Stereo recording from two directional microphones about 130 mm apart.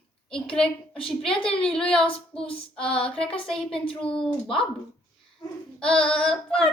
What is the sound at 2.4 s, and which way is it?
Speech, 45° left (ahead or behind).